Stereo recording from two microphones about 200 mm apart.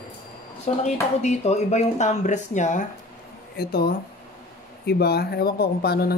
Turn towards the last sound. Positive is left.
turn(degrees=50)  # may be behind; listen again after turning